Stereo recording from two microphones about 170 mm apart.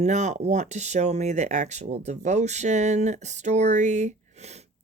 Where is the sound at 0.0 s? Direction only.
40° right (ahead or behind).